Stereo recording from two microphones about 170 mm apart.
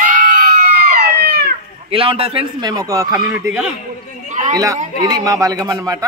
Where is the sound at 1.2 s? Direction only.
75° right (ahead or behind).